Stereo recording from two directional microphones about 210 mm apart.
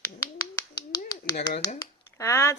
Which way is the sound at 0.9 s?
20° left (ahead or behind).